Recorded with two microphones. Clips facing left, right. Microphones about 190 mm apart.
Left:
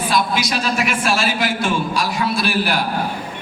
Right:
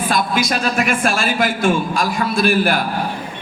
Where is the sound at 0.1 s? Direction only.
50° right (ahead or behind).